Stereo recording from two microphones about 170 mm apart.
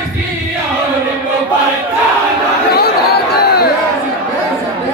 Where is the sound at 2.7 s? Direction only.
65° left (ahead or behind).